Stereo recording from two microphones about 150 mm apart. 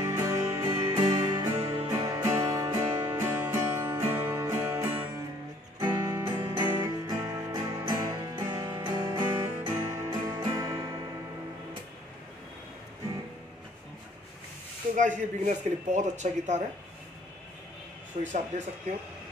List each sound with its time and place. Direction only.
0.0 s music: 20° right (ahead or behind)
1.1 s music: 35° right (ahead or behind)
2.0 s music: 20° right (ahead or behind)
15.0 s speech: 55° right (ahead or behind)
18.1 s speech: 40° right (ahead or behind)